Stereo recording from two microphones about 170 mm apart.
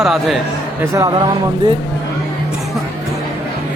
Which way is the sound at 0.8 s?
20° right (ahead or behind).